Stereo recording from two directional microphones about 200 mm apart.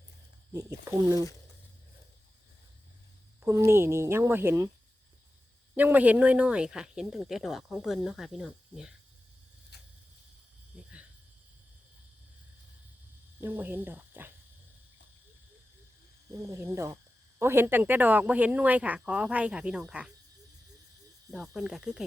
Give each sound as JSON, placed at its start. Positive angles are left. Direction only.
{"t": 0.5, "sound": "speech", "side_deg": -15}
{"t": 3.4, "sound": "speech", "side_deg": -15}
{"t": 5.7, "sound": "speech", "side_deg": -10}
{"t": 9.7, "sound": "a sound", "side_deg": 55}
{"t": 10.7, "sound": "cricket", "side_deg": -5}
{"t": 13.4, "sound": "speech", "side_deg": -10}
{"t": 16.5, "sound": "speech", "side_deg": -15}
{"t": 21.2, "sound": "speech", "side_deg": 0}